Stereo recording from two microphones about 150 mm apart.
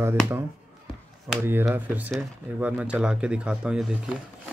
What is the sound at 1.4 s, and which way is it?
Speech, 15° right (ahead or behind).